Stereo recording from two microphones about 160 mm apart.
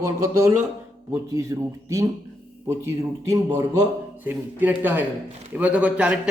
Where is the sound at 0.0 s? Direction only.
20° right (ahead or behind).